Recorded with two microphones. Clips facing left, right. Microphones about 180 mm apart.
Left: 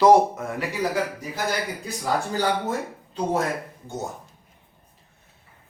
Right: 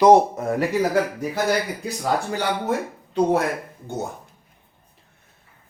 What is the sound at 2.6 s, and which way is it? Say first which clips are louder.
Speech: right 3 dB; 65° right (ahead or behind).